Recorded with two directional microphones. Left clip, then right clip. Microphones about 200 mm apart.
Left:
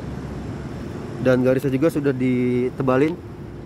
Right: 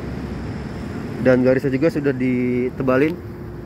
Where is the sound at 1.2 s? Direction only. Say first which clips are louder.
Right 2 dB; 10° left (ahead or behind).